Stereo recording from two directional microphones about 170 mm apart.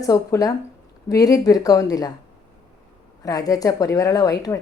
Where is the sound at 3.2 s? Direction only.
20° left (ahead or behind).